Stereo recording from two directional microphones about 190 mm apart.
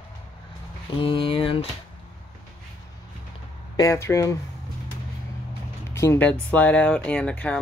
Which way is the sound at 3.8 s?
15° left (ahead or behind).